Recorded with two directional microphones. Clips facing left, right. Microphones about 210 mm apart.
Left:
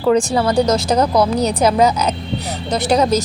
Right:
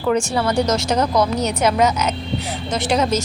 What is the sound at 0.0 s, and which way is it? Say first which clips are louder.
Speech: left 4 dB; 35° left (ahead or behind).